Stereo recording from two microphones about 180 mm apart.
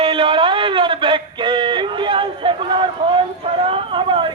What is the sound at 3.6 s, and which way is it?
Vehicle, 30° right (ahead or behind).